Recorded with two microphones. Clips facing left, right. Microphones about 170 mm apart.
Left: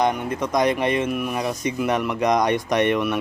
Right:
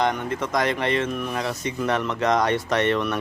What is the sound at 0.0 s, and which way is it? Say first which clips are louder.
Speech: left 2 dB; 15° left (ahead or behind).